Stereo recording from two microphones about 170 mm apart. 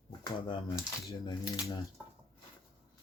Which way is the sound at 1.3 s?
20° left (ahead or behind).